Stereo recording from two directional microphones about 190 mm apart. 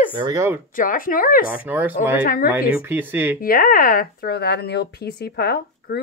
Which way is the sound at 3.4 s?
50° left (ahead or behind).